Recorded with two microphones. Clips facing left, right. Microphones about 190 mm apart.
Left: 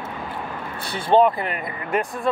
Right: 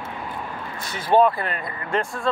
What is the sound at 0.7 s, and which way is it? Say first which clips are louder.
Speech: left 1 dB; 30° left (ahead or behind).